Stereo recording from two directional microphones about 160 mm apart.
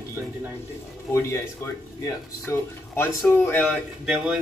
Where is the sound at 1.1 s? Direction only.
15° left (ahead or behind).